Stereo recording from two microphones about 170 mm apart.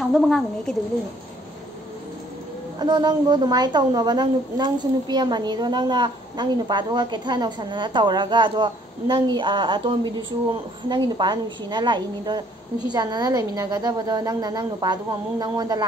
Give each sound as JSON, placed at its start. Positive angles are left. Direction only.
{"t": 0.1, "sound": "speech", "side_deg": 0}
{"t": 2.8, "sound": "a woman's voice", "side_deg": -25}